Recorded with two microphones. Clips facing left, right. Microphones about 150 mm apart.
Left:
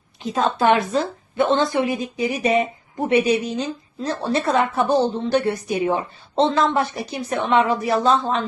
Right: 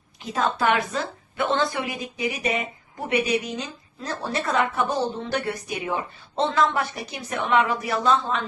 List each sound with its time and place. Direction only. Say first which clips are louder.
0.3 s a woman's voice: left 5 dB; 25° left (ahead or behind)